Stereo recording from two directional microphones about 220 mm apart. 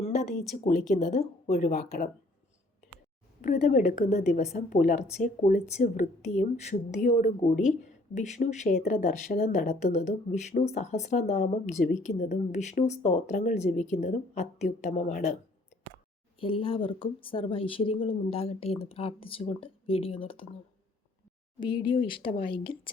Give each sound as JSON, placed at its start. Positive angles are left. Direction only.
{"t": 0.0, "sound": "a sound", "side_deg": 30}
{"t": 0.5, "sound": "speech", "side_deg": 35}
{"t": 3.4, "sound": "speech", "side_deg": 30}
{"t": 16.4, "sound": "speech", "side_deg": 25}
{"t": 21.6, "sound": "speech", "side_deg": 20}
{"t": 22.2, "sound": "speech", "side_deg": 40}
{"t": 22.4, "sound": "speech", "side_deg": 25}